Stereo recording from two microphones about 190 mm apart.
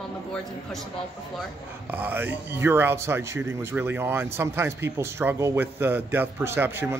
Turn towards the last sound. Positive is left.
turn(degrees=-10)  # may be behind; listen again after turning